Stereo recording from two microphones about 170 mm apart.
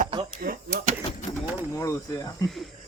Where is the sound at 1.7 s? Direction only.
20° left (ahead or behind).